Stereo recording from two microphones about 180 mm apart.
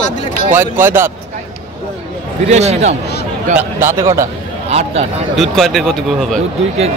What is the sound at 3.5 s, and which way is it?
Speech, 15° right (ahead or behind).